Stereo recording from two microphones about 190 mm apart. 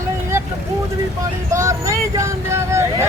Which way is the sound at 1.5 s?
15° right (ahead or behind).